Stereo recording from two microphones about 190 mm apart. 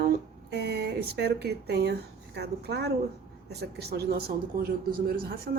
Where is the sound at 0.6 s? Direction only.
60° right (ahead or behind).